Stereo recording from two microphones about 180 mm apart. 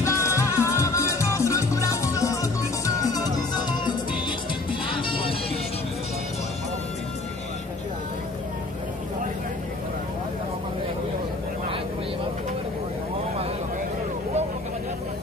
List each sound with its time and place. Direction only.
0.0 s music: 15° left (ahead or behind)